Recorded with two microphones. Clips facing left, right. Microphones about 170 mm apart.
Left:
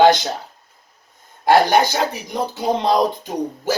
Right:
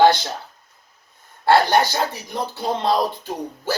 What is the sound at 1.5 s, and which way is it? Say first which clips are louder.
Speech: left 2 dB; 15° left (ahead or behind).